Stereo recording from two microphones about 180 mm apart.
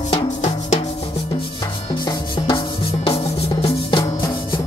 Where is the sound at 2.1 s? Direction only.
25° left (ahead or behind).